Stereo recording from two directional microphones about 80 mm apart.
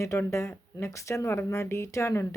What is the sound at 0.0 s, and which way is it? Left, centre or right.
Speech, left.